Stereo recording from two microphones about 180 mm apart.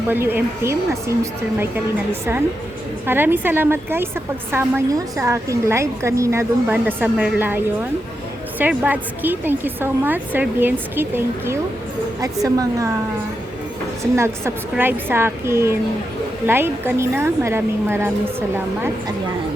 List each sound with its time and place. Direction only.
0.1 s a woman's voice: 10° right (ahead or behind)
3.1 s a woman's voice: 10° right (ahead or behind)
14.0 s a woman's voice: 15° right (ahead or behind)